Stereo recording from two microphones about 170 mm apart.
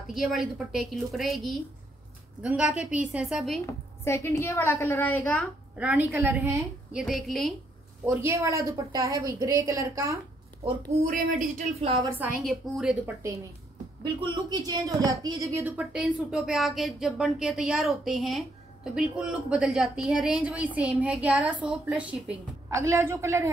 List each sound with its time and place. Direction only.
0.1 s a woman's voice: centre (ahead or behind)
4.0 s a woman's voice: 15° left (ahead or behind)
5.8 s a woman's voice: 5° right (ahead or behind)
8.0 s a woman's voice: 15° right (ahead or behind)
11.1 s speech: 50° right (ahead or behind)
12.4 s a woman's voice: centre (ahead or behind)
14.0 s a woman's voice: 30° right (ahead or behind)